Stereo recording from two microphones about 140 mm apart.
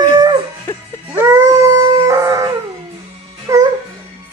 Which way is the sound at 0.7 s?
15° left (ahead or behind).